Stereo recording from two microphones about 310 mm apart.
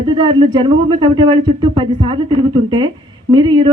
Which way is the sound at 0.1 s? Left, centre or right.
Centre.